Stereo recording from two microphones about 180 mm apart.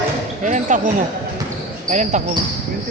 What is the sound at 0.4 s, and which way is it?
Speech, 45° right (ahead or behind).